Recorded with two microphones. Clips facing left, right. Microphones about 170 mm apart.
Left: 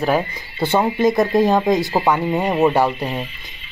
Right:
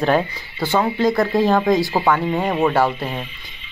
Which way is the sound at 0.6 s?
20° left (ahead or behind).